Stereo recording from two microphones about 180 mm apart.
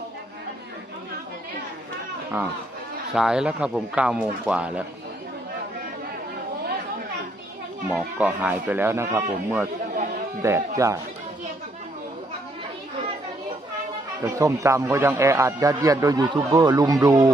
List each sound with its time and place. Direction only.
3.1 s a man's voice: 5° right (ahead or behind)
7.9 s a man's voice: 10° right (ahead or behind)
14.2 s a man's voice: 15° right (ahead or behind)